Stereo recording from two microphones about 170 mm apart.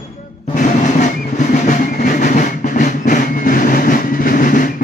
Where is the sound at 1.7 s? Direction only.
50° left (ahead or behind).